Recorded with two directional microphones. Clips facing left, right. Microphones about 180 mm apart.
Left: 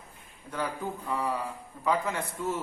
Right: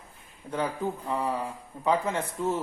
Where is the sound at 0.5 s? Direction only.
25° right (ahead or behind).